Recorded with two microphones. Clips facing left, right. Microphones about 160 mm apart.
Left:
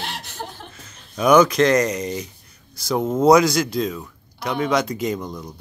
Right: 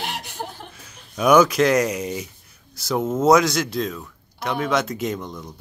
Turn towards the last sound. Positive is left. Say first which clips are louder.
# left 2 dB
turn(degrees=0)  # may be behind; listen again after turning